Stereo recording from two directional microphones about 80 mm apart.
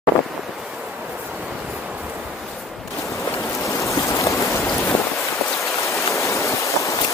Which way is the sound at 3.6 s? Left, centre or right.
Left.